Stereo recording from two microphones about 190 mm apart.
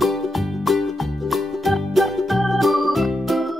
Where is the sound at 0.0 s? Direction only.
Centre (ahead or behind).